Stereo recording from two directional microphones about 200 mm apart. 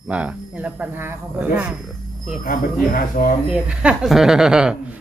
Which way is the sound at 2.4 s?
45° left (ahead or behind).